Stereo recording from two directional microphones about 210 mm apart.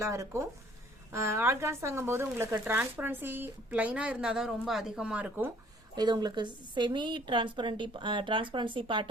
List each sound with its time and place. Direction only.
0.0 s speech: 15° right (ahead or behind)
6.0 s a woman's voice: 20° right (ahead or behind)